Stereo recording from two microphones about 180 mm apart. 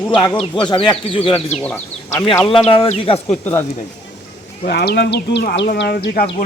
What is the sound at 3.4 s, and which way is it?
Speech, 15° left (ahead or behind).